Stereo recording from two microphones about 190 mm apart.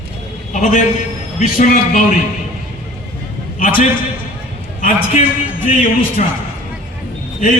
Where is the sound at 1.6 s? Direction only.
45° left (ahead or behind).